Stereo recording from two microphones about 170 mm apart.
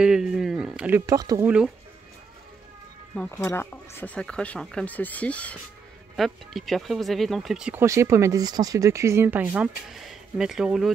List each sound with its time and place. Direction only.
0.0 s speech: 5° right (ahead or behind)
1.0 s speech: 20° right (ahead or behind)
3.3 s speech: 15° left (ahead or behind); by 7.8 s 5° right (ahead or behind)
7.8 s speech: 15° right (ahead or behind)